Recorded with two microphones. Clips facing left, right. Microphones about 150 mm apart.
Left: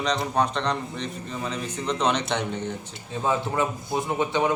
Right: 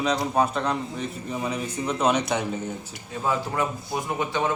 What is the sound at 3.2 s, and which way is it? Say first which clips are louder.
A man's voice: left 1 dB; 20° left (ahead or behind).